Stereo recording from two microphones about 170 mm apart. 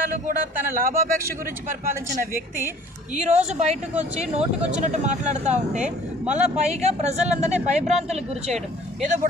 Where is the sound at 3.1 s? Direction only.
40° right (ahead or behind).